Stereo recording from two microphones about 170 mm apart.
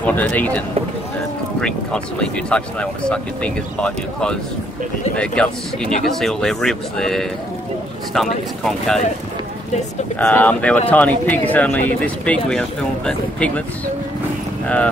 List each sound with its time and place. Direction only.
0.0 s speech: 10° left (ahead or behind)
10.1 s speech: 10° left (ahead or behind)